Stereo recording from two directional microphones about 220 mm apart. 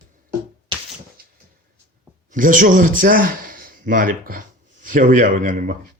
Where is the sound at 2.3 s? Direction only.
40° right (ahead or behind).